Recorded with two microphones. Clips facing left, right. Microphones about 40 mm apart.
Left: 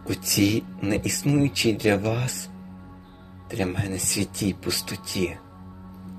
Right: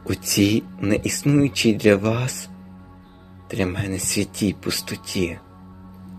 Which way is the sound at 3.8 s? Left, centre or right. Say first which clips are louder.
Right 3 dB; right.